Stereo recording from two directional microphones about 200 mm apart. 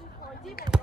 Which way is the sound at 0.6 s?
50° left (ahead or behind).